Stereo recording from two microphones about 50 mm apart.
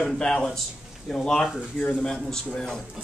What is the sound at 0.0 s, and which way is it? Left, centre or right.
A man's voice, centre.